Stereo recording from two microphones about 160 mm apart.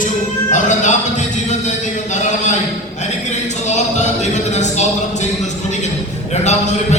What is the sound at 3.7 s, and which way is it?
Music, 45° left (ahead or behind).